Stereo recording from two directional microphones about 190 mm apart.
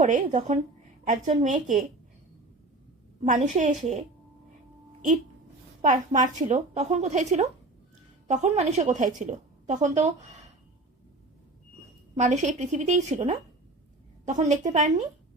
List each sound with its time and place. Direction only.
0.0 s a woman's voice: 40° right (ahead or behind)
3.2 s a woman's voice: 40° right (ahead or behind)
5.8 s a woman's voice: 40° right (ahead or behind)
12.1 s a woman's voice: 35° right (ahead or behind)